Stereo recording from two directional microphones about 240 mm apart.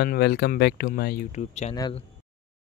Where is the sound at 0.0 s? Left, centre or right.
Left; by 2.0 s centre.